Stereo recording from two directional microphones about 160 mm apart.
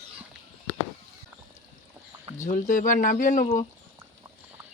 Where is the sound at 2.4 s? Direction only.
55° left (ahead or behind).